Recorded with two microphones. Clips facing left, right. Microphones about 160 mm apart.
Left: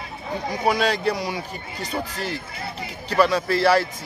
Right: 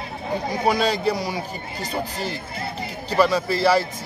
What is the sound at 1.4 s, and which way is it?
Speech, 35° right (ahead or behind).